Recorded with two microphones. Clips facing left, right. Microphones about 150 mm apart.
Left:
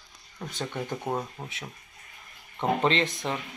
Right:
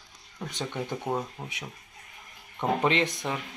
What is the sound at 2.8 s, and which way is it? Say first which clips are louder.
Speech: right 1 dB; 15° right (ahead or behind).